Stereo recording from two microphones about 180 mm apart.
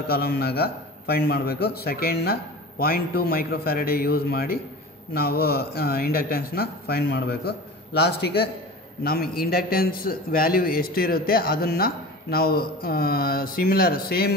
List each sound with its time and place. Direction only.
0.0 s a man's voice: 60° left (ahead or behind)
9.0 s a man's voice: 55° left (ahead or behind)